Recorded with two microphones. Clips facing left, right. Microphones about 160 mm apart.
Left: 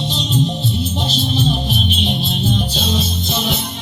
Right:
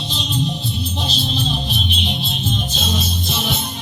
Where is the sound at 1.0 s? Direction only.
45° left (ahead or behind).